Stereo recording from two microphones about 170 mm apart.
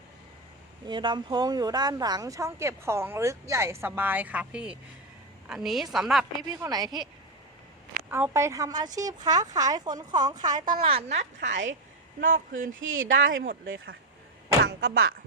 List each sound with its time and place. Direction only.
0.9 s a woman's voice: 25° right (ahead or behind); by 6.2 s centre (ahead or behind)
6.6 s speech: 20° right (ahead or behind)
8.1 s a woman's voice: 15° right (ahead or behind); by 13.6 s 55° right (ahead or behind)
13.7 s speech: 90° right
14.6 s speech: 75° right (ahead or behind)